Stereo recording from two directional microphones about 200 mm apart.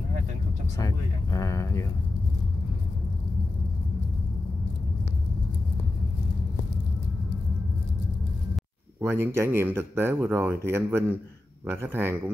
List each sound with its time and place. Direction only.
0.7 s speech: 15° left (ahead or behind)
9.0 s speech: 10° right (ahead or behind)